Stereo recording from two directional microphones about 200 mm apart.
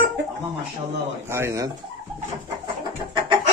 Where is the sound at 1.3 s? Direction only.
15° right (ahead or behind).